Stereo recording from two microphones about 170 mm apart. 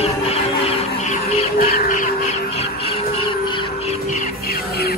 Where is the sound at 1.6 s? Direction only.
55° left (ahead or behind).